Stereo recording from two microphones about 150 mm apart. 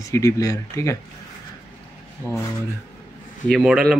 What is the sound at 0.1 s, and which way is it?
Speech, 20° left (ahead or behind).